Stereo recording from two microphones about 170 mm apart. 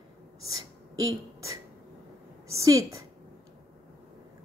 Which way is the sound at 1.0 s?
20° right (ahead or behind).